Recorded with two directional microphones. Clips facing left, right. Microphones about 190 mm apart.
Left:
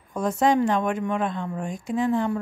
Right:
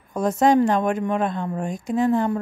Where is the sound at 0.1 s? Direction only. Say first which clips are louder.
Right 3 dB; 40° right (ahead or behind).